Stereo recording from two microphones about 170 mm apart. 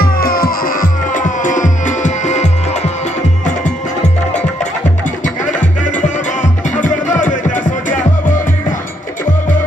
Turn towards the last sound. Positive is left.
turn(degrees=50)  # may be behind; listen again after turning